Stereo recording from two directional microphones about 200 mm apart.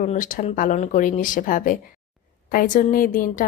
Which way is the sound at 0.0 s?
40° left (ahead or behind).